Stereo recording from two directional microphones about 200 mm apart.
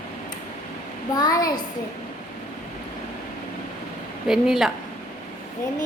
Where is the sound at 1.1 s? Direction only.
20° left (ahead or behind).